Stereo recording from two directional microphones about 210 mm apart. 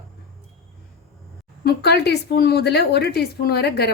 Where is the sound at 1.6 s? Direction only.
50° left (ahead or behind).